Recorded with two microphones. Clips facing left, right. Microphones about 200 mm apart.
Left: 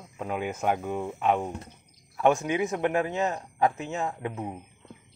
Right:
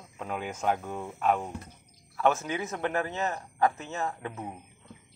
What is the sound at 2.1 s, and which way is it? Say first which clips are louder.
Speech: left 4 dB; 15° left (ahead or behind).